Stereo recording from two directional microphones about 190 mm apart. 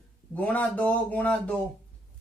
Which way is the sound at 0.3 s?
10° left (ahead or behind).